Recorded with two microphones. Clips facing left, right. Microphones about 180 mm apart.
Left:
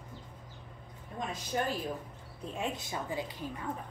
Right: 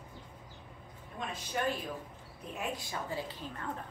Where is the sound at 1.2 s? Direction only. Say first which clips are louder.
Left 2 dB; 40° left (ahead or behind).